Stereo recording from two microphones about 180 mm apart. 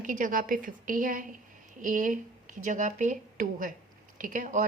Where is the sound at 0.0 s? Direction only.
45° right (ahead or behind).